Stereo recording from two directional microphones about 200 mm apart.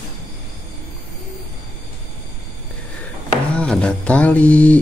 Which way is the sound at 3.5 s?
5° left (ahead or behind).